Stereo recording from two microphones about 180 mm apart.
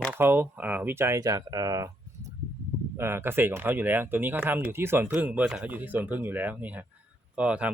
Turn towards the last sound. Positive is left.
turn(degrees=-5)  # may be behind; listen again after turning